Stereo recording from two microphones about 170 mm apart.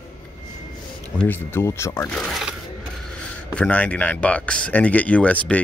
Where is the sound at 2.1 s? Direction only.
Centre (ahead or behind).